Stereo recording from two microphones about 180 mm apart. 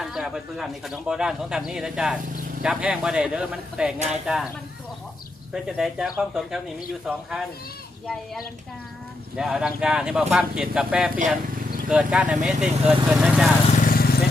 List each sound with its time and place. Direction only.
0.0 s speech: centre (ahead or behind)
5.6 s speech: 5° right (ahead or behind)
9.3 s speech: centre (ahead or behind)
13.7 s vehicle: 50° left (ahead or behind)